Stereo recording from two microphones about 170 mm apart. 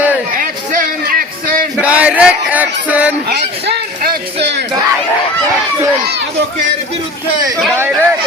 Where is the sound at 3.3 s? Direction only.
70° right (ahead or behind).